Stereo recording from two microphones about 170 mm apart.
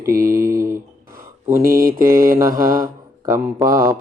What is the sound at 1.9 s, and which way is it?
Speech, 15° right (ahead or behind).